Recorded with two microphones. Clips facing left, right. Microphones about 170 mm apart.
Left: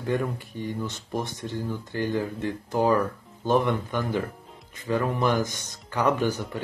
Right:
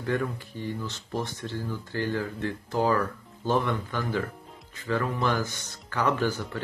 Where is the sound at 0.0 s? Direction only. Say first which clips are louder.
Left 2 dB; 15° left (ahead or behind).